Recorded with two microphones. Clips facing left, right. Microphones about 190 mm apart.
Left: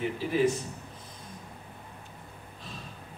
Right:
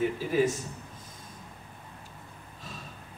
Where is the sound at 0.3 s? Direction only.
45° right (ahead or behind).